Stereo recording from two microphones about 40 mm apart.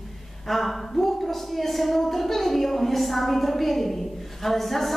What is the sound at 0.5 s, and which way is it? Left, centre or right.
A woman's voice, centre.